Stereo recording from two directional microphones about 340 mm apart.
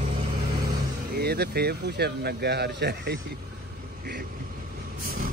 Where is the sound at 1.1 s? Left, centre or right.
Right.